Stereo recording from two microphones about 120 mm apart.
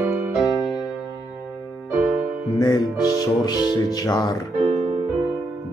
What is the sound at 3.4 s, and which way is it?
Speech, 35° left (ahead or behind).